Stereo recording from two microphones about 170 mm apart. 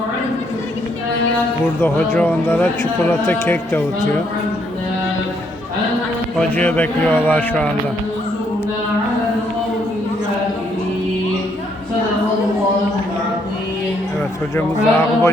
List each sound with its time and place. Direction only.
1.8 s speech: 10° left (ahead or behind)
6.6 s speech: 10° left (ahead or behind)
14.5 s speech: 15° left (ahead or behind)